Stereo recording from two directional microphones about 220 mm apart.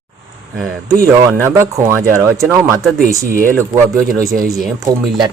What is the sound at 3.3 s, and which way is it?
Speech, 40° right (ahead or behind).